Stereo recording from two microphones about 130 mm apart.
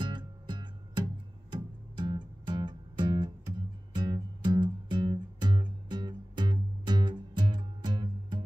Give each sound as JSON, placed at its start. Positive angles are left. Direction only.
{"t": 0.0, "sound": "music", "side_deg": -35}